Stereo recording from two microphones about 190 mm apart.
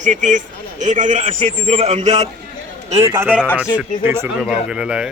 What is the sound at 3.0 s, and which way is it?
Speech, 10° right (ahead or behind).